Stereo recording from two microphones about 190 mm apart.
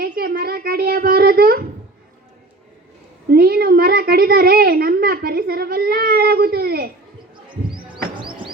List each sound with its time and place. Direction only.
0.0 s a sound: 50° right (ahead or behind)
3.2 s a child's voice: 55° right (ahead or behind)
7.5 s music: 25° right (ahead or behind)